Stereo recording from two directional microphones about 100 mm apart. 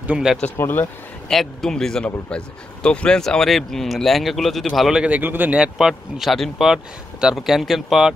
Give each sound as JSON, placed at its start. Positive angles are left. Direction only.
{"t": 0.3, "sound": "speech", "side_deg": -5}
{"t": 0.6, "sound": "speech", "side_deg": 20}
{"t": 1.3, "sound": "speech", "side_deg": 5}